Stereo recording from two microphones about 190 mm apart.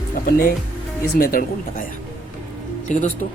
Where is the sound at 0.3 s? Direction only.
50° left (ahead or behind).